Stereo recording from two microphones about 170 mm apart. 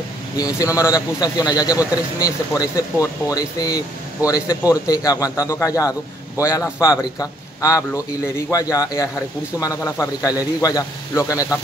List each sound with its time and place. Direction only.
0.6 s speech: 20° left (ahead or behind)